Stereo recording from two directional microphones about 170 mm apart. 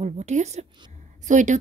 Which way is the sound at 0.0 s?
40° right (ahead or behind).